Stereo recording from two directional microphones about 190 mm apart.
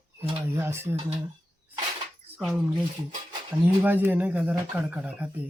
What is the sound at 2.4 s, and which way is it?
Speech, 5° right (ahead or behind).